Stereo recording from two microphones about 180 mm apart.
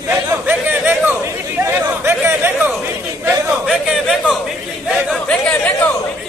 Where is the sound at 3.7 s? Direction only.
5° right (ahead or behind).